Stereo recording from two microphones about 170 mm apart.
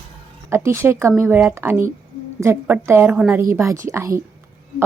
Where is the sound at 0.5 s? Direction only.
15° right (ahead or behind).